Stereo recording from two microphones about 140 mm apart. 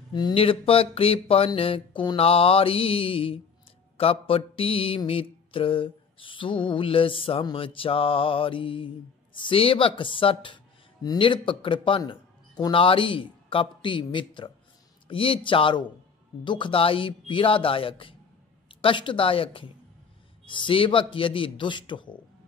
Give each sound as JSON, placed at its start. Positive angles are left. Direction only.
{"t": 0.1, "sound": "mantra", "side_deg": 35}
{"t": 12.0, "sound": "speech", "side_deg": 30}
{"t": 15.0, "sound": "mantra", "side_deg": 40}